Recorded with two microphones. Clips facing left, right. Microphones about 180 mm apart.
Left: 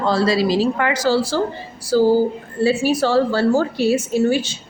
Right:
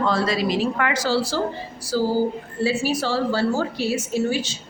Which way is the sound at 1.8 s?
60° left (ahead or behind).